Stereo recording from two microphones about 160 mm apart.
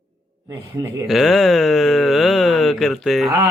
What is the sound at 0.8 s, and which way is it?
Speech, 20° right (ahead or behind).